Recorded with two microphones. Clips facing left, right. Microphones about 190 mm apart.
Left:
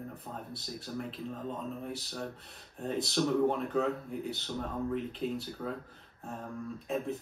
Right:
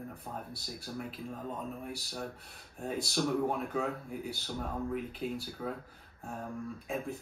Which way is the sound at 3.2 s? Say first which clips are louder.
Left 4 dB; 10° right (ahead or behind).